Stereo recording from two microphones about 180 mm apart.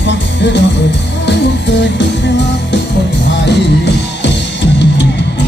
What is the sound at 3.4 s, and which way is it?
Music, 70° left (ahead or behind).